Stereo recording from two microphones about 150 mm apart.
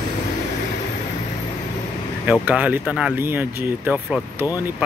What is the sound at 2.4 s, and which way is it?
Speech, 10° right (ahead or behind).